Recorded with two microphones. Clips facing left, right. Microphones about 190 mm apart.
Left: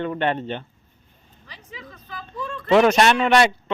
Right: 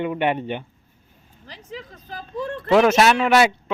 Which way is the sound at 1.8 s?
40° right (ahead or behind).